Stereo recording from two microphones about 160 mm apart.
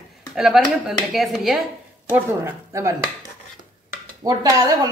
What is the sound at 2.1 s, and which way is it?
Speech, 15° right (ahead or behind).